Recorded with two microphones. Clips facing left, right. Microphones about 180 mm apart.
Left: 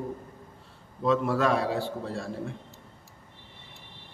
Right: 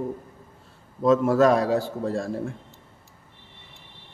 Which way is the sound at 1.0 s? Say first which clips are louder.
Right 6 dB; 45° right (ahead or behind).